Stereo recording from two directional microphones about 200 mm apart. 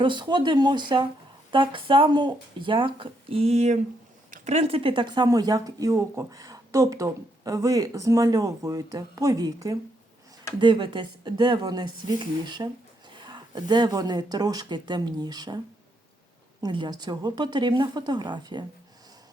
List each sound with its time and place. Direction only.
0.0 s speech: 25° right (ahead or behind)